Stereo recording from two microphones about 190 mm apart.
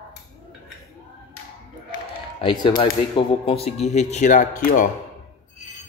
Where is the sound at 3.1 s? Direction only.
30° left (ahead or behind).